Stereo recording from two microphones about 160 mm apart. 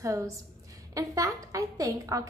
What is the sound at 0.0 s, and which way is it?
A woman's voice, 20° right (ahead or behind).